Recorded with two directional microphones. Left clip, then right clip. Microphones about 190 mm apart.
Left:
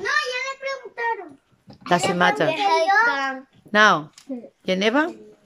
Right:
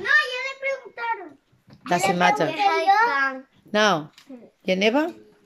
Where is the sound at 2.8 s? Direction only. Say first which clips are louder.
Even; 15° right (ahead or behind).